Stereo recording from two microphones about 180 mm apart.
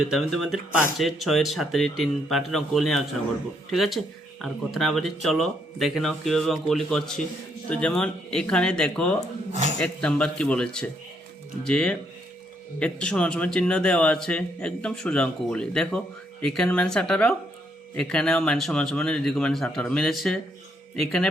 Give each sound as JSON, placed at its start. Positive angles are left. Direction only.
{"t": 0.0, "sound": "speech", "side_deg": 0}
{"t": 9.5, "sound": "a sound", "side_deg": -40}
{"t": 9.8, "sound": "speech", "side_deg": 5}